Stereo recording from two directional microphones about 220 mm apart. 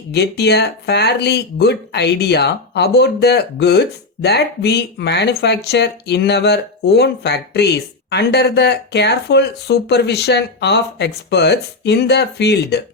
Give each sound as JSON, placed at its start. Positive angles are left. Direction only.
{"t": 0.1, "sound": "speech", "side_deg": 50}